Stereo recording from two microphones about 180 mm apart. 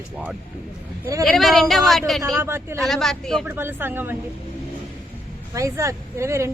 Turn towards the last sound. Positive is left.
turn(degrees=-15)  # may be behind; listen again after turning